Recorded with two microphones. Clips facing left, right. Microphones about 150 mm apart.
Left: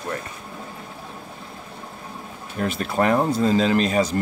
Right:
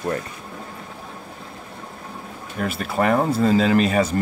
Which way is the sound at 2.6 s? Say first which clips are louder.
Even; 5° right (ahead or behind).